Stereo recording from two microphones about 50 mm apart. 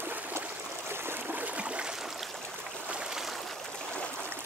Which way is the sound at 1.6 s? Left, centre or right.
Right.